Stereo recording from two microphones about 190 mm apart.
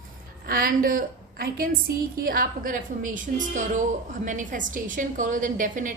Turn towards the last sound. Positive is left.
turn(degrees=-45)  # may be behind; listen again after turning